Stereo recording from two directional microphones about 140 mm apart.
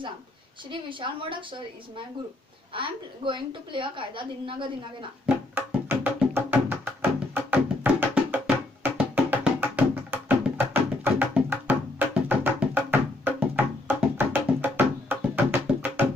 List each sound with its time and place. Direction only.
0.7 s a woman's voice: 35° right (ahead or behind)
5.2 s music: 10° right (ahead or behind)